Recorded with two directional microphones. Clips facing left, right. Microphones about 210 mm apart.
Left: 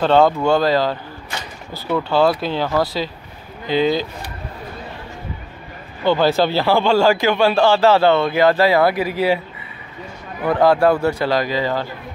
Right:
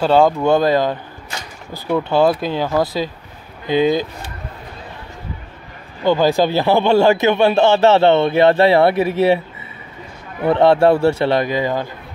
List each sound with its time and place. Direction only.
0.0 s speech: 10° right (ahead or behind)
2.0 s speech: 15° right (ahead or behind)
6.0 s a man's voice: 15° right (ahead or behind)
10.4 s a man's voice: 25° right (ahead or behind)